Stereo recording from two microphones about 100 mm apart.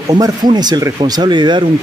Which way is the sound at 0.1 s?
45° right (ahead or behind).